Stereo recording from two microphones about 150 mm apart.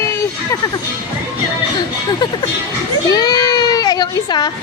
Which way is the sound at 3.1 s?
25° left (ahead or behind).